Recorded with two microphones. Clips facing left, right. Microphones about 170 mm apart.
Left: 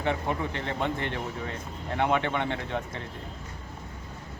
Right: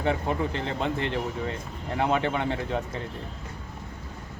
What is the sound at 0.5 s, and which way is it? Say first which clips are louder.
Speech: right 2 dB; 30° right (ahead or behind).